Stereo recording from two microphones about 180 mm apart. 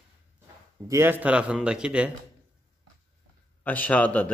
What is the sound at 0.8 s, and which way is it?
Speech, 15° right (ahead or behind).